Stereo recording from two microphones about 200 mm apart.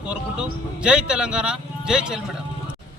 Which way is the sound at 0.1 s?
5° right (ahead or behind).